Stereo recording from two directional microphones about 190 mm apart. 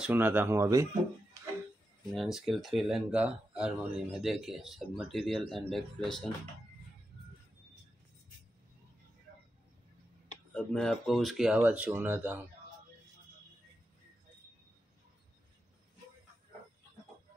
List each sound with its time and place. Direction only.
0.0 s speech: 10° right (ahead or behind)
2.1 s speech: centre (ahead or behind)
10.5 s speech: 5° left (ahead or behind)